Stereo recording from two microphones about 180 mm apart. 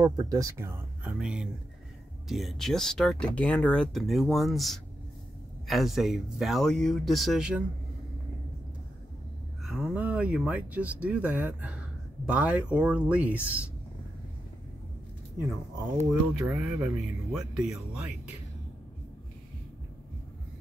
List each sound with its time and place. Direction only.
0.0 s speech: 20° right (ahead or behind)
9.7 s speech: 5° right (ahead or behind)
16.1 s speech: 15° right (ahead or behind)